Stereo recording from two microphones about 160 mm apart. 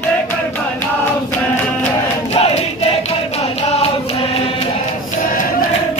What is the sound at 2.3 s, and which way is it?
Crowd, 40° left (ahead or behind).